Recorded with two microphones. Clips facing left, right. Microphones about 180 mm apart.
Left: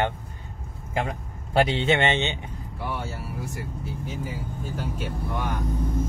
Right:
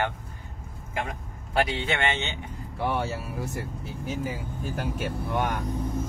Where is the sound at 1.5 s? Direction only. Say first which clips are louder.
Left 5 dB; 25° left (ahead or behind).